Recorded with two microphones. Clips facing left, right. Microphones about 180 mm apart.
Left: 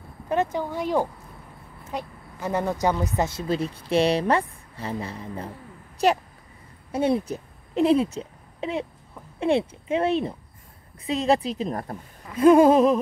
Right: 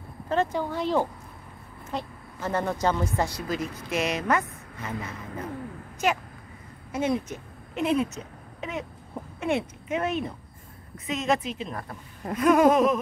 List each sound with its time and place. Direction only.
0.3 s a woman's voice: 15° left (ahead or behind); by 12.0 s 40° left (ahead or behind)
12.4 s a woman's voice: 30° left (ahead or behind)